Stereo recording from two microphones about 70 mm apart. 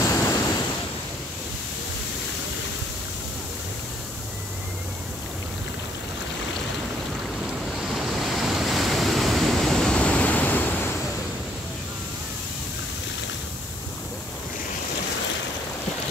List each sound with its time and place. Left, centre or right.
0.0 s waves: left
7.7 s waves: centre
9.9 s vehicle: centre